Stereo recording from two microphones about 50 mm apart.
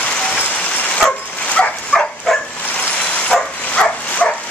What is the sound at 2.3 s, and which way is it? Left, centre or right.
Bow-wow, centre.